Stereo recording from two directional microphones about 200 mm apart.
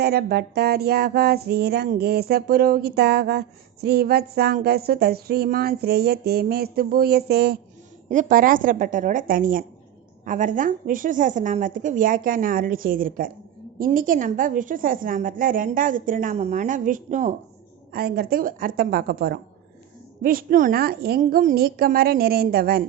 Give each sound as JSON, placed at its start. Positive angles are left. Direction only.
{"t": 0.0, "sound": "music", "side_deg": -50}
{"t": 8.1, "sound": "music", "side_deg": -40}